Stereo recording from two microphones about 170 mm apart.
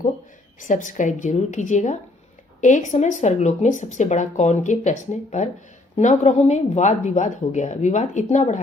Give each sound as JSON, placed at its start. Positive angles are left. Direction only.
{"t": 0.6, "sound": "speech", "side_deg": 50}